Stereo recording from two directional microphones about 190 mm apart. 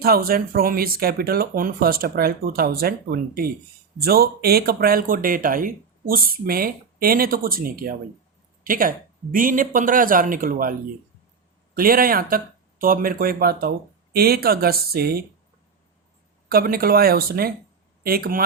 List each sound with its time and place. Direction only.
0.0 s speech: 50° right (ahead or behind)
16.5 s speech: 50° right (ahead or behind)